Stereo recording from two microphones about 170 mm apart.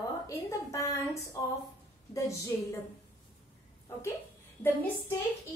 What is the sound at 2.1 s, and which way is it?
Speech, 20° left (ahead or behind).